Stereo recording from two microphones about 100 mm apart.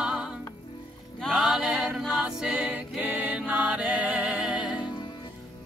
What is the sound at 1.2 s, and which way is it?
A capella, centre (ahead or behind).